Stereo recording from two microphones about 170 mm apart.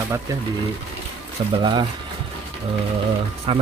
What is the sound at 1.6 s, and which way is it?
Speech, 25° right (ahead or behind).